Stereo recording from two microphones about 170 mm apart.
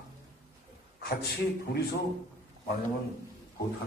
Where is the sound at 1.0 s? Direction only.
70° left (ahead or behind).